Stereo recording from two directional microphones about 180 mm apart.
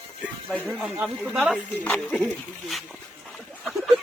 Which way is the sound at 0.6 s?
5° left (ahead or behind).